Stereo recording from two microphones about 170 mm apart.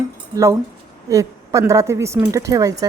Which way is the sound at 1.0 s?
20° right (ahead or behind).